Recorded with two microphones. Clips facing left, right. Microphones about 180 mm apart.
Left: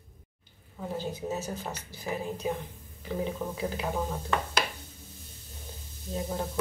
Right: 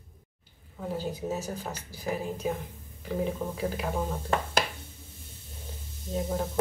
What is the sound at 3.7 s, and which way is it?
Speech, 5° right (ahead or behind).